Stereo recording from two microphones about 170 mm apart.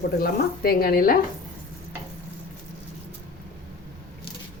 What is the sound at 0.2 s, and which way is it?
Speech, 60° left (ahead or behind).